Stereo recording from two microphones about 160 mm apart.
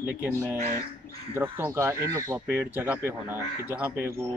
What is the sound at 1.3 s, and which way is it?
Speech, 15° right (ahead or behind).